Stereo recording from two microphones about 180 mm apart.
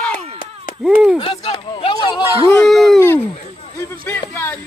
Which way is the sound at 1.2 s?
30° left (ahead or behind).